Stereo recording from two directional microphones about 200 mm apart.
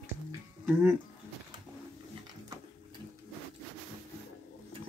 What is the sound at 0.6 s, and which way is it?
Speech, 5° right (ahead or behind).